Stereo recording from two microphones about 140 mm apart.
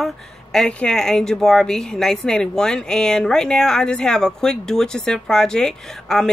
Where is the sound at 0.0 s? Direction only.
5° left (ahead or behind).